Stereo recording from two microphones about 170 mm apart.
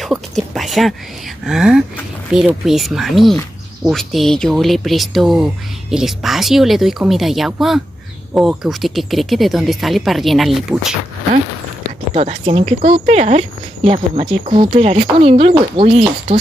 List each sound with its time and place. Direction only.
0.0 s a sound: centre (ahead or behind)
1.4 s speech: 5° right (ahead or behind)
12.1 s speech: 35° right (ahead or behind)